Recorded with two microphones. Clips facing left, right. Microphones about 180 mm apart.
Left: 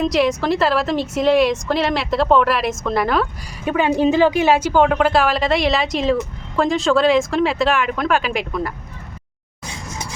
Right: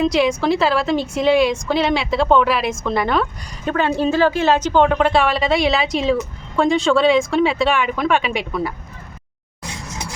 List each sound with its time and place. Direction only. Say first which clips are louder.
0.0 s a woman's voice: right 1 dB; centre (ahead or behind)